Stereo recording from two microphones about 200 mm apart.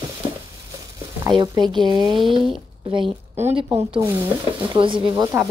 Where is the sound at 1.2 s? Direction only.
15° right (ahead or behind).